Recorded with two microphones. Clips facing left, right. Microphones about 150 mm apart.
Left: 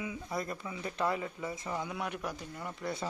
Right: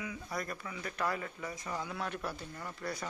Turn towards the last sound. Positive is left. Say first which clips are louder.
# left 3 dB
turn(degrees=25)  # may be behind; listen again after turning